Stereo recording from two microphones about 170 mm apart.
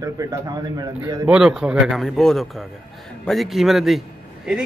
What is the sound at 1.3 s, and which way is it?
A man's voice, 5° right (ahead or behind).